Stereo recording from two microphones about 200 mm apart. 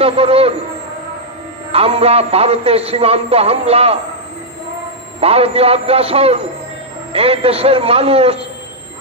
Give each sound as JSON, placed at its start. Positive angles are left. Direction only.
{"t": 0.0, "sound": "a man's voice", "side_deg": -30}
{"t": 1.7, "sound": "a man's voice", "side_deg": -30}
{"t": 5.2, "sound": "a man's voice", "side_deg": -30}